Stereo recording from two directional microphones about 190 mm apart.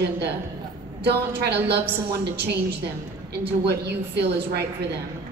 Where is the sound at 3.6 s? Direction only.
60° right (ahead or behind).